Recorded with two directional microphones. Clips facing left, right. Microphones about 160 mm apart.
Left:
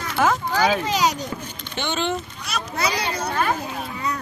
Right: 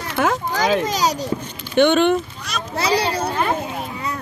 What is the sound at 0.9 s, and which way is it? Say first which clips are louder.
Speech: right 1 dB; 35° right (ahead or behind).